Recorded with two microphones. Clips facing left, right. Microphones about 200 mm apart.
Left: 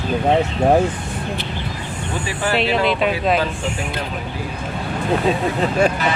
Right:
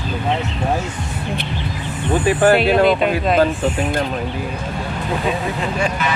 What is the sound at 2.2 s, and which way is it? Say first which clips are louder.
Speech: right 7 dB; 55° right (ahead or behind).